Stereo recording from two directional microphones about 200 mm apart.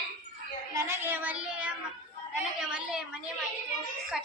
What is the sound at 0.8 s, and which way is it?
Child singing, 10° right (ahead or behind).